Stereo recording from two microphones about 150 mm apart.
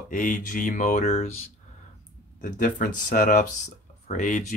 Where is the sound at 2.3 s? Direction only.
60° left (ahead or behind).